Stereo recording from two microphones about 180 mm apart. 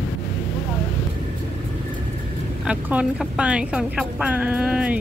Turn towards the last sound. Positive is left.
turn(degrees=-5)  # may be behind; listen again after turning